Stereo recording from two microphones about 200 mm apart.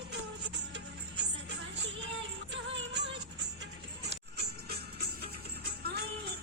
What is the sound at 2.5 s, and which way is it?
Music, 65° right (ahead or behind).